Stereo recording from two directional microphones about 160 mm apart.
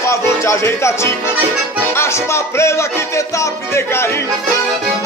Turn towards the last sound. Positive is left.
turn(degrees=15)  # may be behind; listen again after turning